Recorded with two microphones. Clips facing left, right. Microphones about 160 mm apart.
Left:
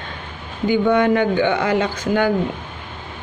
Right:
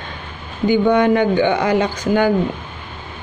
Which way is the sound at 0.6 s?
15° right (ahead or behind).